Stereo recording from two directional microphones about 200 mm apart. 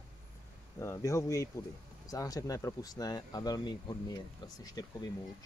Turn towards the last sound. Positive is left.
turn(degrees=20)  # may be behind; listen again after turning